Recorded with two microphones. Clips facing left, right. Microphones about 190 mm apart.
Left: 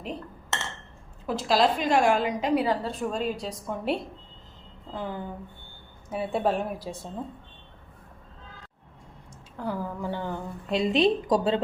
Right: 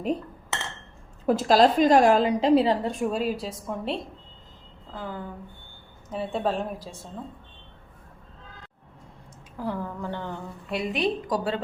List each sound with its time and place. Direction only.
1.3 s a woman's voice: 45° right (ahead or behind); by 2.9 s 25° right (ahead or behind)
2.9 s a woman's voice: 10° right (ahead or behind)
4.9 s a woman's voice: 20° left (ahead or behind)
9.6 s a woman's voice: centre (ahead or behind); by 11.6 s 25° left (ahead or behind)